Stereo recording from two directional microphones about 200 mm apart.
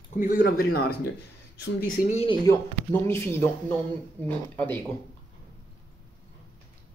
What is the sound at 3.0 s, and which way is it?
Speech, 15° left (ahead or behind).